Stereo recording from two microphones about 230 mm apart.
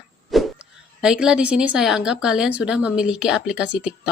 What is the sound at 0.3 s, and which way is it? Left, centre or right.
Speech, centre.